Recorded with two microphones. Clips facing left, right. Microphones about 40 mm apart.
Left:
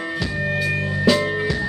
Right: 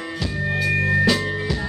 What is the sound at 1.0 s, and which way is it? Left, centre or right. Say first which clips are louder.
Music: left 3 dB; centre.